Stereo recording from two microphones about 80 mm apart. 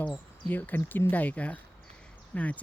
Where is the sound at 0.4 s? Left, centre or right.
Left.